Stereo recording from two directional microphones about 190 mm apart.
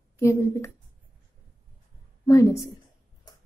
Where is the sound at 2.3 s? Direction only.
15° left (ahead or behind).